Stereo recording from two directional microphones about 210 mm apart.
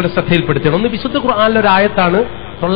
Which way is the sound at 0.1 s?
20° left (ahead or behind).